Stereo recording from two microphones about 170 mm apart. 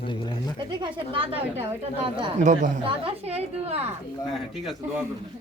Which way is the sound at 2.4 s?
50° right (ahead or behind).